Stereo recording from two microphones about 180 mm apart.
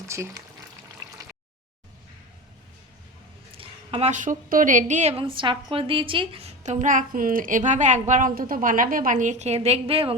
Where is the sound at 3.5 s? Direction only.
30° right (ahead or behind).